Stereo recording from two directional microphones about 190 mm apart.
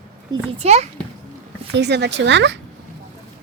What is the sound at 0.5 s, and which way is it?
Speech, 35° right (ahead or behind).